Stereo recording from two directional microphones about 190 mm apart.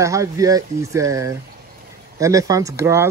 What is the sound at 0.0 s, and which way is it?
Speech, 15° right (ahead or behind).